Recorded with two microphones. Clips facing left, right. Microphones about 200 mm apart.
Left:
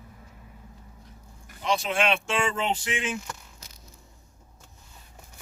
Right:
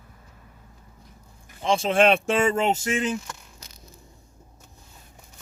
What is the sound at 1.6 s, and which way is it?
Speech, 30° right (ahead or behind).